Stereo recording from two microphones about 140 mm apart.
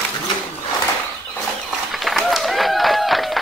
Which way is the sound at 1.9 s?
Centre (ahead or behind).